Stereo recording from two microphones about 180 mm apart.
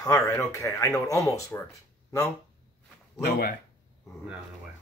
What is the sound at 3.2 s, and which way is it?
Speech, 60° left (ahead or behind).